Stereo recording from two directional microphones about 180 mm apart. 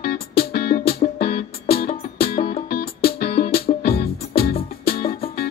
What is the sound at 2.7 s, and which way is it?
Music, 60° left (ahead or behind).